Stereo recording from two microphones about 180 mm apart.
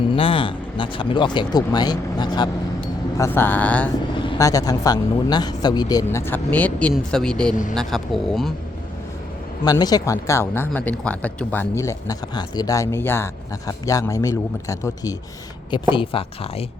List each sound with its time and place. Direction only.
0.1 s speech: 30° left (ahead or behind)
2.8 s speech: 10° left (ahead or behind)
4.1 s speech: 25° left (ahead or behind); by 7.5 s 5° left (ahead or behind)
7.5 s speech: 45° left (ahead or behind)
7.8 s speech: centre (ahead or behind)
9.6 s speech: 20° left (ahead or behind)
15.7 s speech: 30° left (ahead or behind)